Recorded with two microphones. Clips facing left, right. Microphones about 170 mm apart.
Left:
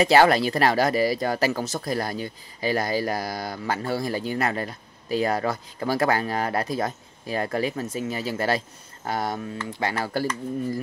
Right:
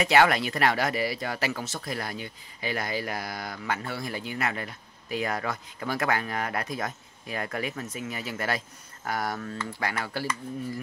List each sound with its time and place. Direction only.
0.0 s speech: 35° left (ahead or behind)